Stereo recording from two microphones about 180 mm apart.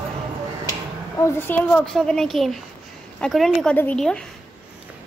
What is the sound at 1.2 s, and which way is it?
A woman's voice, 15° left (ahead or behind).